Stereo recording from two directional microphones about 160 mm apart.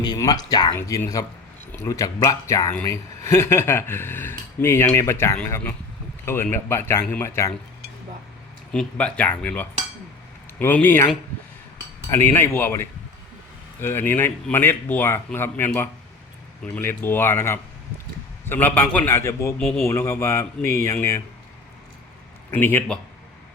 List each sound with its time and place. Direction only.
0.0 s speech: 25° left (ahead or behind)
8.7 s speech: 5° left (ahead or behind)
12.1 s speech: 15° left (ahead or behind)
19.5 s speech: centre (ahead or behind)
19.8 s speech: 15° left (ahead or behind)
22.5 s speech: 10° left (ahead or behind)